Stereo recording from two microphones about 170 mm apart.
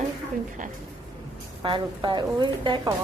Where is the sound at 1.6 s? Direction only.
30° right (ahead or behind).